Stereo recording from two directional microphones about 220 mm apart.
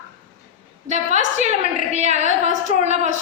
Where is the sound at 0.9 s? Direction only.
30° right (ahead or behind).